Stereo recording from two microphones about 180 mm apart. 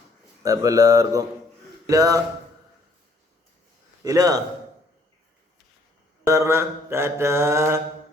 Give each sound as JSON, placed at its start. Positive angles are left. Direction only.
{"t": 0.4, "sound": "speech", "side_deg": -20}
{"t": 4.0, "sound": "speech", "side_deg": -20}
{"t": 6.2, "sound": "mantra", "side_deg": -15}